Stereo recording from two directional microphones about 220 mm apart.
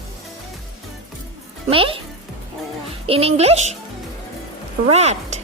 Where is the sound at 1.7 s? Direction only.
25° right (ahead or behind).